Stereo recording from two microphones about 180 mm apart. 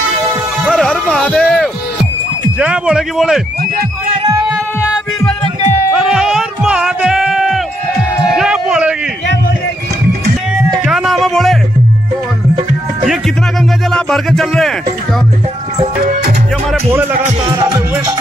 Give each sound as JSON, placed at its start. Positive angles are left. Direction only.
{"t": 0.7, "sound": "a sound", "side_deg": 0}
{"t": 2.6, "sound": "speech", "side_deg": -5}
{"t": 4.2, "sound": "a sound", "side_deg": -25}
{"t": 5.9, "sound": "music", "side_deg": -5}
{"t": 10.5, "sound": "music", "side_deg": 0}
{"t": 13.8, "sound": "speech", "side_deg": 0}
{"t": 16.0, "sound": "music", "side_deg": -50}